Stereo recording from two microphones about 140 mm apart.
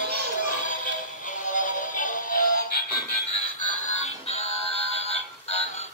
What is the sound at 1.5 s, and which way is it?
Music, 70° left (ahead or behind).